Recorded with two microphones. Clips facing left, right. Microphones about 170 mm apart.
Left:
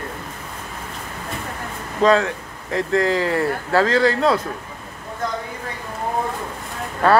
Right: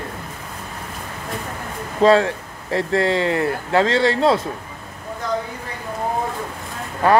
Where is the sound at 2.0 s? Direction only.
30° right (ahead or behind).